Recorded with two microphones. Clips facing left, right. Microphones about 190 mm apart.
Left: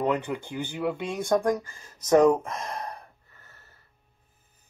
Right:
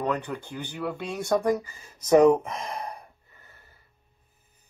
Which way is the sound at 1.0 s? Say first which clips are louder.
Right 1 dB; centre (ahead or behind).